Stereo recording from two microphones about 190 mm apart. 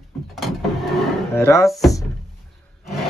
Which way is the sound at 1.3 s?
15° left (ahead or behind).